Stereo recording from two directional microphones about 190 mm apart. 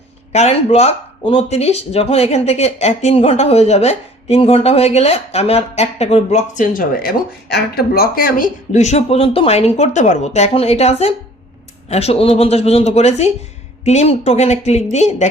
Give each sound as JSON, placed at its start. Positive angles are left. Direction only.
{"t": 0.3, "sound": "speech", "side_deg": 35}